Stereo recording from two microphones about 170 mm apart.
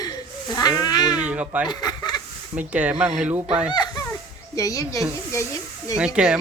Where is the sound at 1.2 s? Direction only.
5° right (ahead or behind).